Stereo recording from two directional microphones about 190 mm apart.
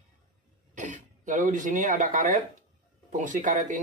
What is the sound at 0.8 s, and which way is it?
Speech, 40° right (ahead or behind).